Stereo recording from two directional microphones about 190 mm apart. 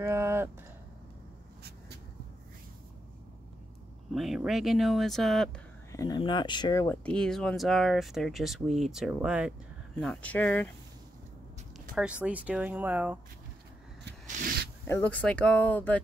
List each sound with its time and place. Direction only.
0.0 s speech: 15° right (ahead or behind)
4.1 s speech: centre (ahead or behind)
5.9 s speech: 20° left (ahead or behind); by 9.5 s 5° right (ahead or behind)
9.9 s speech: 5° left (ahead or behind)
11.9 s speech: 5° right (ahead or behind)
14.2 s a sound: 50° right (ahead or behind)
14.9 s speech: 10° left (ahead or behind)